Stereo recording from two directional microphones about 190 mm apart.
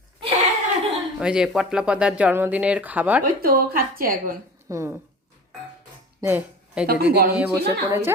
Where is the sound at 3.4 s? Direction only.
50° right (ahead or behind).